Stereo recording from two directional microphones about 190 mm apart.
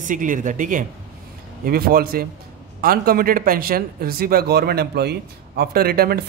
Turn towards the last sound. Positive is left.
turn(degrees=-55)  # may be behind; listen again after turning